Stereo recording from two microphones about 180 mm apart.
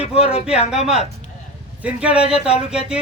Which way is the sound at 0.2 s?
30° left (ahead or behind).